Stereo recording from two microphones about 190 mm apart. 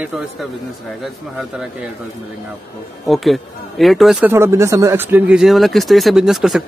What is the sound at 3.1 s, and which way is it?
Speech, centre (ahead or behind).